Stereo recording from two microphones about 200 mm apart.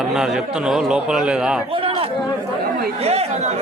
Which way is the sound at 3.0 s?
30° right (ahead or behind).